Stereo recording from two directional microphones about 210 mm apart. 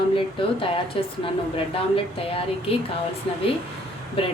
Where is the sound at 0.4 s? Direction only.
25° left (ahead or behind).